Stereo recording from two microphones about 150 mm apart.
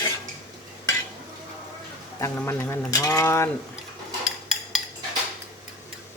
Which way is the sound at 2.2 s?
15° left (ahead or behind).